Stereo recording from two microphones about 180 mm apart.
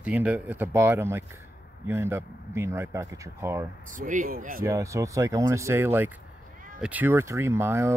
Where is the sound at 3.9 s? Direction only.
45° right (ahead or behind).